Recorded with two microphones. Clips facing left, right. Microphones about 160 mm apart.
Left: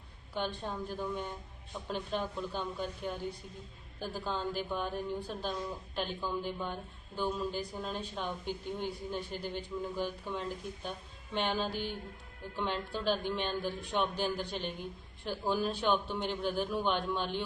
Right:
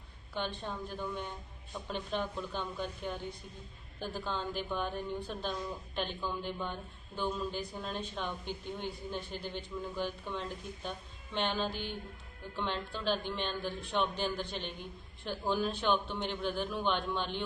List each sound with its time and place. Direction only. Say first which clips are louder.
0.3 s a woman's voice: left 2 dB; 10° left (ahead or behind)
11.7 s music: left 3 dB; 45° left (ahead or behind)
12.5 s a woman's voice: left 2 dB; 10° left (ahead or behind)